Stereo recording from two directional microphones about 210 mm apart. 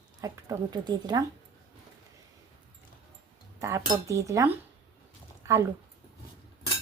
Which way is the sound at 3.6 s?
15° right (ahead or behind).